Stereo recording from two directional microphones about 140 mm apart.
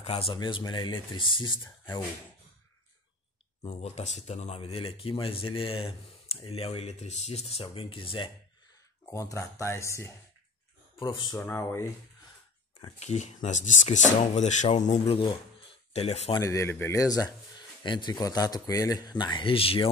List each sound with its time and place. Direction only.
0.0 s speech: 45° left (ahead or behind)
3.6 s speech: 55° left (ahead or behind); by 8.3 s 40° left (ahead or behind)
9.1 s speech: 20° left (ahead or behind)
11.3 s speech: 15° left (ahead or behind)
13.0 s speech: 55° left (ahead or behind)
16.3 s speech: 20° left (ahead or behind); by 19.9 s 40° left (ahead or behind)